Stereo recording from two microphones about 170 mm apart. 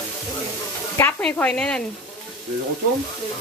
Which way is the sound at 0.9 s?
10° left (ahead or behind).